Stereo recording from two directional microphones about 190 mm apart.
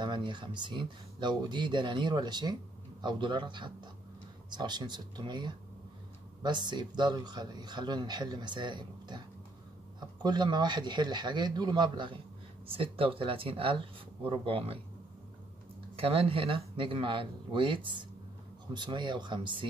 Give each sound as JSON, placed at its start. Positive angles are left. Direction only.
{"t": 0.0, "sound": "speech", "side_deg": -25}
{"t": 16.0, "sound": "speech", "side_deg": -30}